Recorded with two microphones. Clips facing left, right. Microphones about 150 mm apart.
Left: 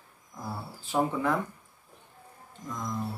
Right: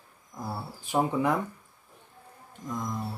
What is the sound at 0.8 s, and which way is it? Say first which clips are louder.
Speech: right 2 dB; 15° right (ahead or behind).